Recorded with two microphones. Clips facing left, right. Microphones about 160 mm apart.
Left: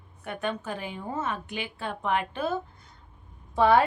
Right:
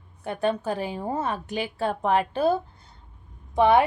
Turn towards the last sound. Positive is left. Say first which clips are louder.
# right 2 dB
turn(degrees=-20)  # may be behind; listen again after turning